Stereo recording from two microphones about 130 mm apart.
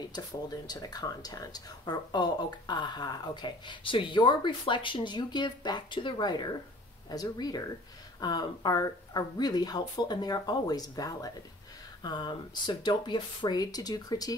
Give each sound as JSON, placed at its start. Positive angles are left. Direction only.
{"t": 0.1, "sound": "speech", "side_deg": 30}